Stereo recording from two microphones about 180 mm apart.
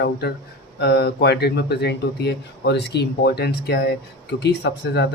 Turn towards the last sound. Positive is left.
turn(degrees=70)  # may be behind; listen again after turning